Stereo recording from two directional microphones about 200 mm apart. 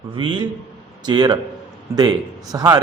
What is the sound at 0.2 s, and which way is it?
A man's voice, 25° right (ahead or behind).